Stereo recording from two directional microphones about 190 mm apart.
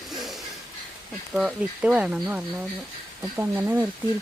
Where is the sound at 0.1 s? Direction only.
Centre (ahead or behind).